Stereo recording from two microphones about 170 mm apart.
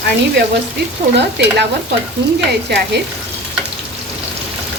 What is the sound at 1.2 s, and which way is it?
Speech, 90° right.